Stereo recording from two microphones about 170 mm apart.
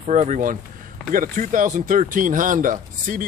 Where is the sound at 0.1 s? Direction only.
45° right (ahead or behind).